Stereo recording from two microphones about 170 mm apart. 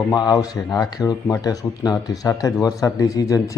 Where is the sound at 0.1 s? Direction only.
25° left (ahead or behind).